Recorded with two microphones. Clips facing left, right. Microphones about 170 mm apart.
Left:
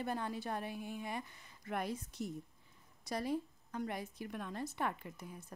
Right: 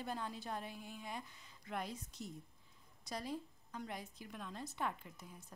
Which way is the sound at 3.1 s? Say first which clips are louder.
Left 6 dB; 60° left (ahead or behind).